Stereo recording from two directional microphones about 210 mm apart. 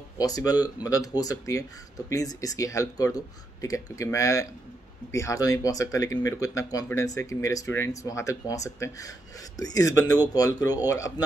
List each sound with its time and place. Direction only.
0.2 s speech: 15° left (ahead or behind)